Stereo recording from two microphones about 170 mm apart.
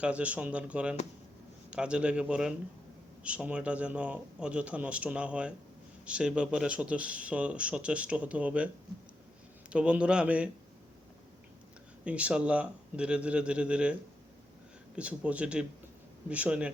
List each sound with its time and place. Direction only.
0.0 s a man's voice: 5° right (ahead or behind)
12.0 s speech: 5° right (ahead or behind)
14.9 s speech: 5° right (ahead or behind)